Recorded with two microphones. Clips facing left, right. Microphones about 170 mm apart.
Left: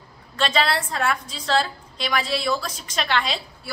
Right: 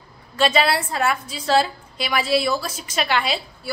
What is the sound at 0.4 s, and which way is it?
A woman's voice, 10° right (ahead or behind).